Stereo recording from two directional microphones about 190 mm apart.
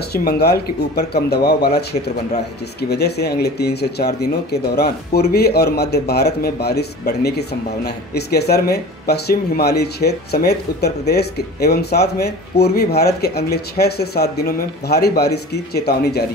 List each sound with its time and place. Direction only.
0.1 s speech: 55° left (ahead or behind)